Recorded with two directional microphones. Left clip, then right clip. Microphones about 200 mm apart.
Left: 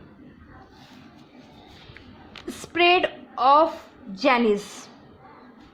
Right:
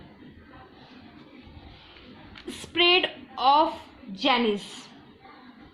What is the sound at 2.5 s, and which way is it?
A woman's voice, 25° left (ahead or behind).